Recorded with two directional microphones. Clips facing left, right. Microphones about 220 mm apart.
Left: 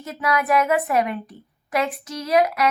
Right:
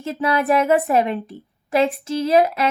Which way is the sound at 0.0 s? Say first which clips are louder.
Right 3 dB; 30° right (ahead or behind).